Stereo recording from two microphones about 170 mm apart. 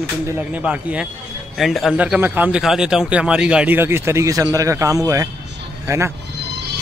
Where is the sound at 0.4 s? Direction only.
10° right (ahead or behind).